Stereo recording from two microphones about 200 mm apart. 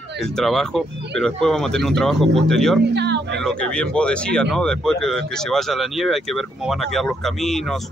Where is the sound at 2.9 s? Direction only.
60° right (ahead or behind).